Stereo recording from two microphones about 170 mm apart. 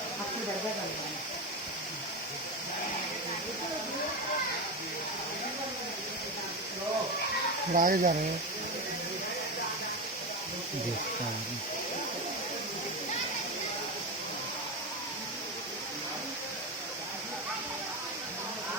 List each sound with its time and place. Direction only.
7.7 s speech: 50° right (ahead or behind)